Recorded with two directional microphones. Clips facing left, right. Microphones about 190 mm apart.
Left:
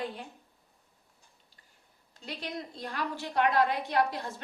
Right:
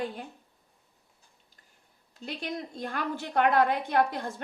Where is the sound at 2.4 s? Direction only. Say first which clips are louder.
Right 3 dB; 50° right (ahead or behind).